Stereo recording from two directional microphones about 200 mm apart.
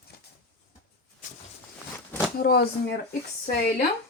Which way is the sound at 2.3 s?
50° left (ahead or behind).